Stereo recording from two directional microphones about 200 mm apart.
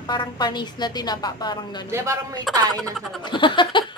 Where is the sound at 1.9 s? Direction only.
15° right (ahead or behind).